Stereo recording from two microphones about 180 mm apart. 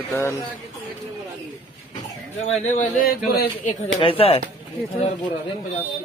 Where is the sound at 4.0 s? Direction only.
30° left (ahead or behind).